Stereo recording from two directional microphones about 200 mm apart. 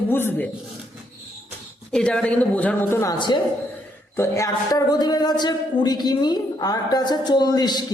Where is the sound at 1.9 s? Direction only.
5° left (ahead or behind).